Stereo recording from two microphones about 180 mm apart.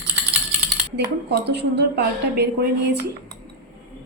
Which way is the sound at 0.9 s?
70° right (ahead or behind).